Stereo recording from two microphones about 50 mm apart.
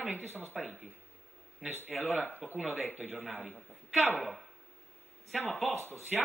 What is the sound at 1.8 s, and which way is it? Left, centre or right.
Speech, left.